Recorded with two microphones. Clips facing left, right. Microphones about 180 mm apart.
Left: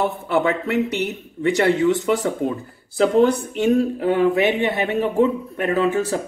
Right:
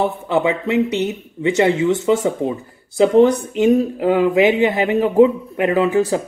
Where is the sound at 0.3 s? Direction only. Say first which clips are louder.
Right 2 dB; 15° right (ahead or behind).